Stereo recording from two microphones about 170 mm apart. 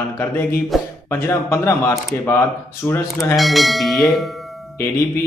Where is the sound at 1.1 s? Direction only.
15° left (ahead or behind).